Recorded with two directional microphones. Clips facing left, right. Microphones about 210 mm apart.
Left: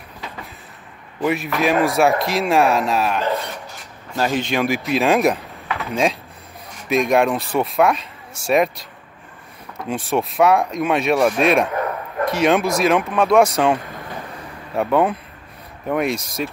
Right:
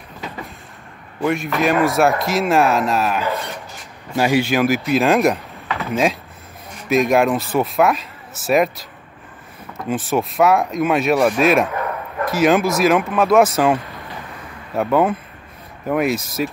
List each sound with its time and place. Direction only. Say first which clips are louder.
1.2 s a man's voice: right 1 dB; centre (ahead or behind)